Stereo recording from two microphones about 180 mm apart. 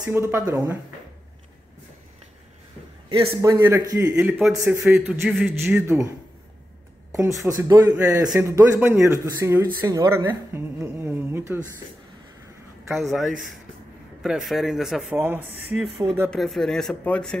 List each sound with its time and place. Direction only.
0.1 s a woman's voice: 15° right (ahead or behind)
3.1 s a man's voice: 30° right (ahead or behind)
3.4 s a woman's voice: 15° right (ahead or behind)
7.1 s a man's voice: 15° right (ahead or behind)
12.9 s speech: centre (ahead or behind)
16.3 s speech: centre (ahead or behind)